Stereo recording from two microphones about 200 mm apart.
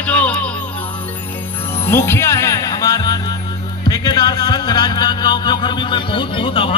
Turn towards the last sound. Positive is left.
turn(degrees=25)  # may be behind; listen again after turning